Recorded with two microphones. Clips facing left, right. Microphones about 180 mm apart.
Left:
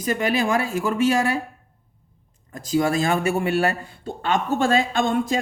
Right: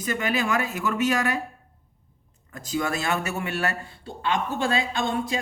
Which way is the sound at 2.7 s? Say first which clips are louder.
Left 6 dB; 35° left (ahead or behind).